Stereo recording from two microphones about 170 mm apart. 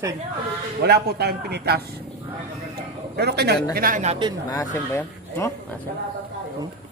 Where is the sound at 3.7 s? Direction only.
55° right (ahead or behind).